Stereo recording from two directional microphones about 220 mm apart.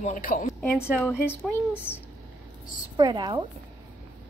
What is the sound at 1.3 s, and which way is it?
Speech, 10° left (ahead or behind).